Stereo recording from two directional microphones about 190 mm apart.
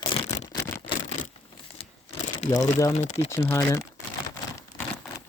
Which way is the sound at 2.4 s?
35° left (ahead or behind).